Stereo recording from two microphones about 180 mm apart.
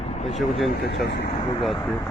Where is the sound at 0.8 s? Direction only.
70° left (ahead or behind).